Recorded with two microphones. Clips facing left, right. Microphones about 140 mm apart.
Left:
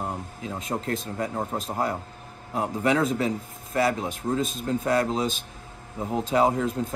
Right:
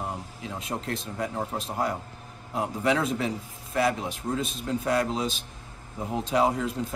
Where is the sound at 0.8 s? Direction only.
45° left (ahead or behind).